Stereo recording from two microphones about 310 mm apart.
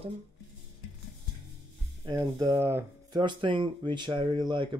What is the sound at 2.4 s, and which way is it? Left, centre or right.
Speech, centre.